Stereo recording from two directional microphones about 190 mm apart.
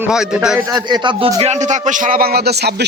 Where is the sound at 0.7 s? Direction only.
25° right (ahead or behind).